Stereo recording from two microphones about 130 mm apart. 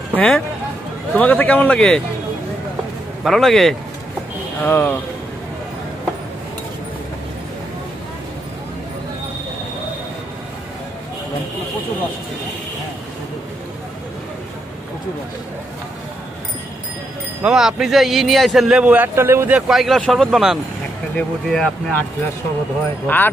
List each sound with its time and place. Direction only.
0.1 s speech: 10° left (ahead or behind)
3.3 s speech: centre (ahead or behind)
4.6 s speech: 15° left (ahead or behind)
17.4 s speech: 5° right (ahead or behind)
19.7 s speech: centre (ahead or behind)
23.0 s speech: 15° left (ahead or behind)